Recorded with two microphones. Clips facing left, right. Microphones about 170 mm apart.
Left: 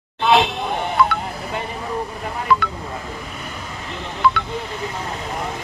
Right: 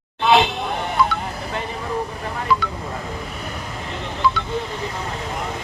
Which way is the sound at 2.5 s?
60° left (ahead or behind).